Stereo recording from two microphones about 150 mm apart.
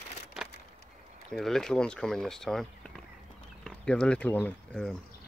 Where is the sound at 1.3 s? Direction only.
5° left (ahead or behind).